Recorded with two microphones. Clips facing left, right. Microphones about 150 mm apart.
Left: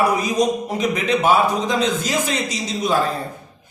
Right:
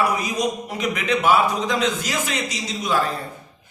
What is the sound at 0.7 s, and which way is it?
Speech, 35° left (ahead or behind).